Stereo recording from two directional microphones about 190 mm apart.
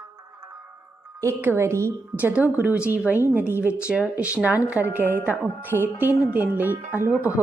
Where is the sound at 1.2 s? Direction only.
15° right (ahead or behind).